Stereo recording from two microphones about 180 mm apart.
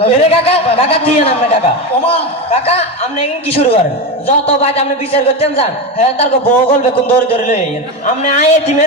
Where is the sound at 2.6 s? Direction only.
35° left (ahead or behind).